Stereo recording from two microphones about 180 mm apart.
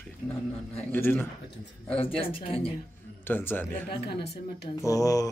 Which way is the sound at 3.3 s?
10° left (ahead or behind).